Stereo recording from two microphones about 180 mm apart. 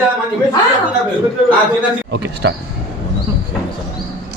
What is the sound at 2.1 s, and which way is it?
Speech, 70° right (ahead or behind).